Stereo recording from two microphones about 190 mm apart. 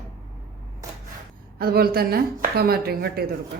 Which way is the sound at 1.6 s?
55° right (ahead or behind).